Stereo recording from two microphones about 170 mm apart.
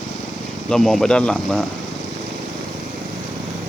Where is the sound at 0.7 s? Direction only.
Centre (ahead or behind).